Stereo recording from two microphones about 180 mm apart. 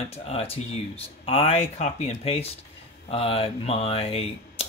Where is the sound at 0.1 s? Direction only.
35° left (ahead or behind).